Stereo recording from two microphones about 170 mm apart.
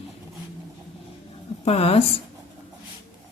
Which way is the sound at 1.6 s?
35° left (ahead or behind).